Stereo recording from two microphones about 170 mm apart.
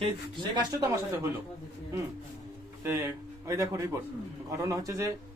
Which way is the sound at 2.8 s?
15° right (ahead or behind).